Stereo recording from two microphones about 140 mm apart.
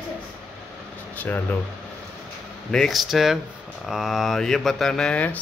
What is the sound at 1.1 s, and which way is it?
Speech, 10° left (ahead or behind).